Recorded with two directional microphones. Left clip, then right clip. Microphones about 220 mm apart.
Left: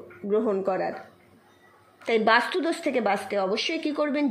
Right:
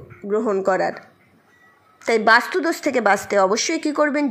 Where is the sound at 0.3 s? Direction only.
5° right (ahead or behind).